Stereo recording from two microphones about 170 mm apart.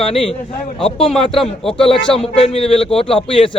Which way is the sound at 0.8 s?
35° left (ahead or behind).